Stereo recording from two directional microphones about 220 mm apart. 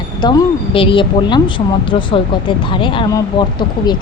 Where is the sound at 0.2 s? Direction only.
20° left (ahead or behind).